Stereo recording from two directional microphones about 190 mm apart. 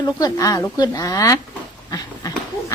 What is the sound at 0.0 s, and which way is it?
Speech, 20° left (ahead or behind).